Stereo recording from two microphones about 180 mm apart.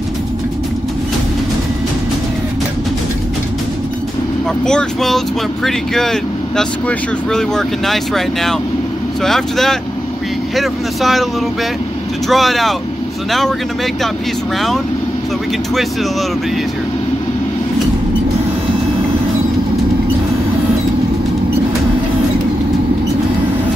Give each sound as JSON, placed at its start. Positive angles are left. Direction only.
{"t": 4.6, "sound": "speech", "side_deg": 5}
{"t": 12.3, "sound": "speech", "side_deg": 0}